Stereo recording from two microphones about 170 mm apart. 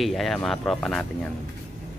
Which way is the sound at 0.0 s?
Centre (ahead or behind).